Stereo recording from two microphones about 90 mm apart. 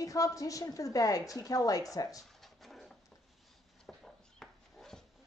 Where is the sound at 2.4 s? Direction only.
Centre (ahead or behind).